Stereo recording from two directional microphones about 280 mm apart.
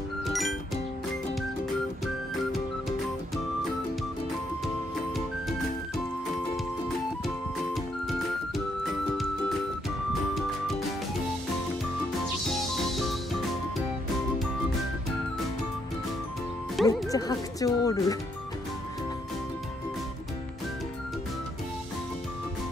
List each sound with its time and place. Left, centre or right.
0.2 s music: centre
7.7 s music: centre
12.8 s music: centre
16.8 s music: centre
17.1 s speech: centre